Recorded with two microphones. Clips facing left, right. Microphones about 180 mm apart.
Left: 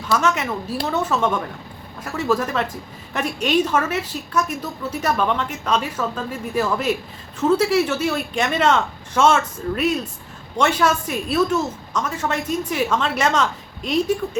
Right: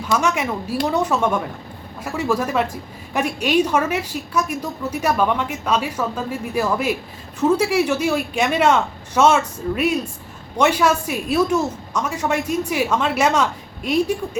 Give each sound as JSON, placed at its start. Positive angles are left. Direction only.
{"t": 0.2, "sound": "a woman's voice", "side_deg": -10}